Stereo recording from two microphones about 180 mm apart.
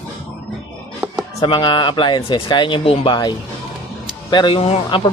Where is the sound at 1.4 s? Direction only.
25° left (ahead or behind).